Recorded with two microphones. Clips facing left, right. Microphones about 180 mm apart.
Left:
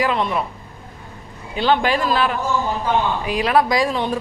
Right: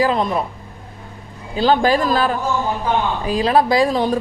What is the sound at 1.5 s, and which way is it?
Speech, 40° right (ahead or behind).